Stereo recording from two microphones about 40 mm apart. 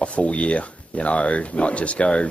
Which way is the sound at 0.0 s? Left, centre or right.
Left.